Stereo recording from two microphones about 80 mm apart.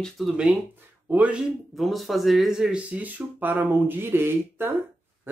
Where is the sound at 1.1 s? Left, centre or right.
Centre.